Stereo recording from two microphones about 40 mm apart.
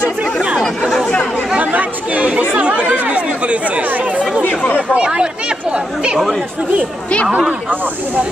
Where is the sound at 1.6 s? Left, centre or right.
Right.